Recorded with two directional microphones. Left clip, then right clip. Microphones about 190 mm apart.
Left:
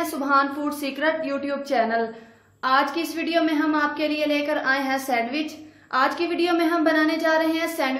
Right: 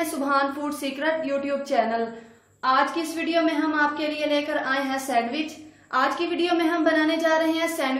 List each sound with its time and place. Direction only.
0.0 s a woman's voice: 15° left (ahead or behind)
2.6 s a woman's voice: 30° left (ahead or behind)